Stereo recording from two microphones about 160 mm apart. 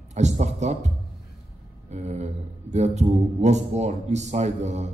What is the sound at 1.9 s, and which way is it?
Speech, 45° right (ahead or behind).